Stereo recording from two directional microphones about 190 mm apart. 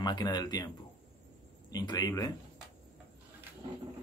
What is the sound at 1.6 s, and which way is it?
Speech, 20° left (ahead or behind).